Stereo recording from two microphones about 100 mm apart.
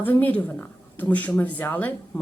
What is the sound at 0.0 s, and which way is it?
A woman's voice, 20° left (ahead or behind).